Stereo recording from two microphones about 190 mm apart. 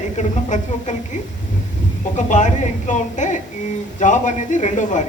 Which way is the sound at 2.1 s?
40° left (ahead or behind).